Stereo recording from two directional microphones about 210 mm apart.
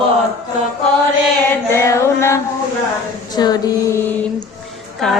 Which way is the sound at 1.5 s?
15° left (ahead or behind).